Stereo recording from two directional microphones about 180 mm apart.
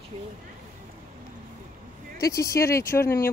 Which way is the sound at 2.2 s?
20° left (ahead or behind).